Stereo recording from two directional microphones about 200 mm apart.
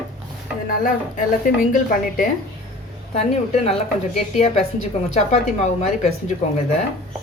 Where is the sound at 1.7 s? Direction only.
40° left (ahead or behind).